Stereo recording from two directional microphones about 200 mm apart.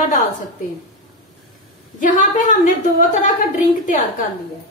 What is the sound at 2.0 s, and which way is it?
A woman's voice, 40° left (ahead or behind).